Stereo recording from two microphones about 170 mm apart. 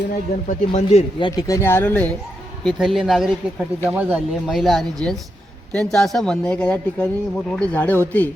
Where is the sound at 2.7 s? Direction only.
Centre (ahead or behind).